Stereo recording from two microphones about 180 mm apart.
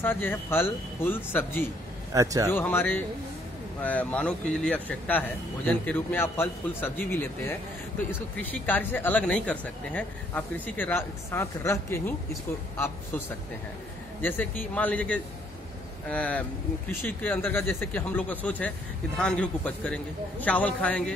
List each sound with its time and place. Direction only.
0.0 s speech: 10° left (ahead or behind)
2.1 s speech: 20° right (ahead or behind)
2.5 s speech: 10° left (ahead or behind)
14.2 s speech: 10° left (ahead or behind)